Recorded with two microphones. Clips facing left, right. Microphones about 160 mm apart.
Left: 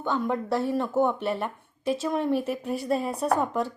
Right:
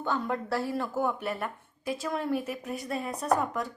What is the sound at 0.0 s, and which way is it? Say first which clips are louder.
A woman's voice: left 3 dB; 20° left (ahead or behind).